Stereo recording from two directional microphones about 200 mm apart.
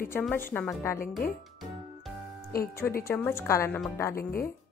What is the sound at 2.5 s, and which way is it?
Speech, 50° left (ahead or behind).